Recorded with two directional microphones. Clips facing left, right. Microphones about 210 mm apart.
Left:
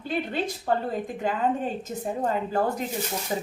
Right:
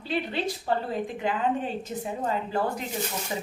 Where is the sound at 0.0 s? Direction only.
45° left (ahead or behind).